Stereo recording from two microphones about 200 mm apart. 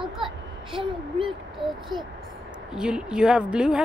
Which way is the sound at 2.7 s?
5° right (ahead or behind).